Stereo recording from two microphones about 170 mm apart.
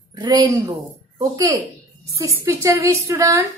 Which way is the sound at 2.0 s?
20° right (ahead or behind).